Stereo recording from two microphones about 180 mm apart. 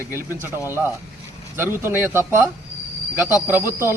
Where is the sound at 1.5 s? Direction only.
15° right (ahead or behind).